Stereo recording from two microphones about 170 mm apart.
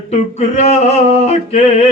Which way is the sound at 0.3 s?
40° left (ahead or behind).